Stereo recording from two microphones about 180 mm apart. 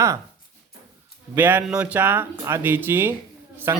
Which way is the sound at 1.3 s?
10° right (ahead or behind).